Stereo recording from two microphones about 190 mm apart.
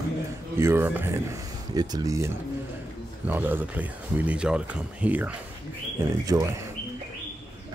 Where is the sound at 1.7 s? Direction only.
20° right (ahead or behind).